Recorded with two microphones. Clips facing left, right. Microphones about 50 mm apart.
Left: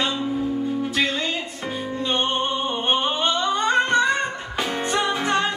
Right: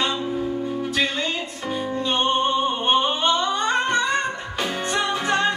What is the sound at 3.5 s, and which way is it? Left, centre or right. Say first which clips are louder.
Singing: left 2 dB; left.